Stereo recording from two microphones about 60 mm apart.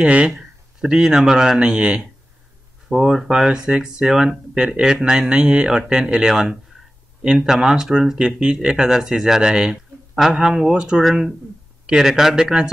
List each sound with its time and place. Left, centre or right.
0.0 s speech: centre
2.9 s speech: centre